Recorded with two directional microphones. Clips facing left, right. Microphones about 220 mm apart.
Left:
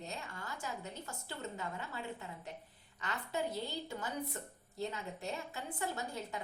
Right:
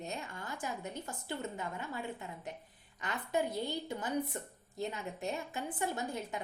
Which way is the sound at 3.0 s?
15° right (ahead or behind).